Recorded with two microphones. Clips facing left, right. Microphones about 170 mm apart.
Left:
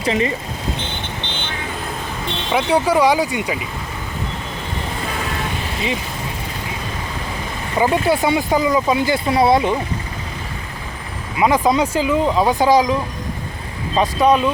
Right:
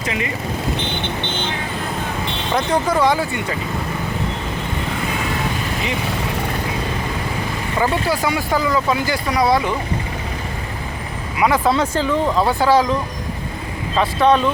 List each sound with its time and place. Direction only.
2.5 s speech: 10° left (ahead or behind)
7.8 s speech: 20° left (ahead or behind)
11.3 s speech: 20° left (ahead or behind)
13.9 s speech: 15° left (ahead or behind)